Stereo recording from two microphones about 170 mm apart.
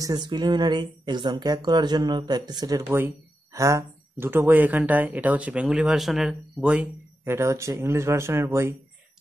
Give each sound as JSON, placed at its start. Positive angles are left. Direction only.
{"t": 0.0, "sound": "speech", "side_deg": -25}